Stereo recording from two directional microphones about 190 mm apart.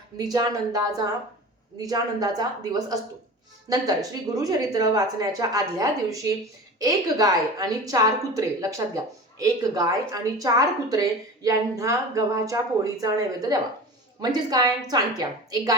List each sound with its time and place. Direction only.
0.2 s a woman's voice: 20° right (ahead or behind)